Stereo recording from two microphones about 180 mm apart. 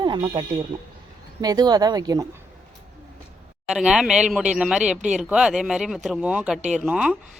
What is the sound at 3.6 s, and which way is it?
A woman's voice, 5° right (ahead or behind).